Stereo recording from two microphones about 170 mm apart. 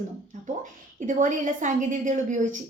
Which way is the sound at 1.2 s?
50° right (ahead or behind).